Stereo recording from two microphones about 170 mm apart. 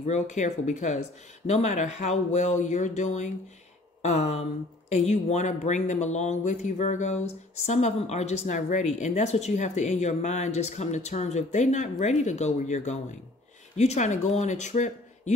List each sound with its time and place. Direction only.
0.0 s speech: 45° left (ahead or behind)